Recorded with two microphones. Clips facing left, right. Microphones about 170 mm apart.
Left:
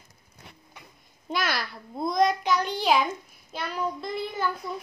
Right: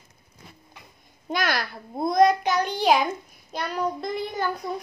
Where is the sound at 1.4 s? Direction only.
45° right (ahead or behind).